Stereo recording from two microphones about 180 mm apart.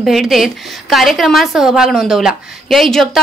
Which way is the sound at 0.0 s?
Centre (ahead or behind).